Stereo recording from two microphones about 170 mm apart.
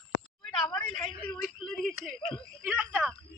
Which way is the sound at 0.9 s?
30° left (ahead or behind).